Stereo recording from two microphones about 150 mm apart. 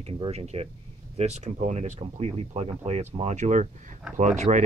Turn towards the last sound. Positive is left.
turn(degrees=-55)  # may be behind; listen again after turning